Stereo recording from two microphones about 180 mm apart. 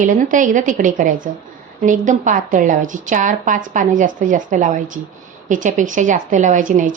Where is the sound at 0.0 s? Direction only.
45° right (ahead or behind).